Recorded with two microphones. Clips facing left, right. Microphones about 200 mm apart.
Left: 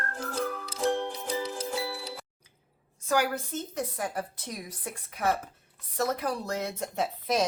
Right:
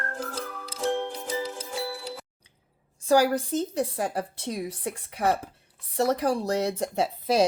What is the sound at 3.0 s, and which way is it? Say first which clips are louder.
Speech: right 7 dB; 35° right (ahead or behind).